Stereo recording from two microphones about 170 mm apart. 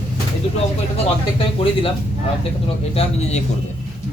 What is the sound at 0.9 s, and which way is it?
Speech, 30° left (ahead or behind).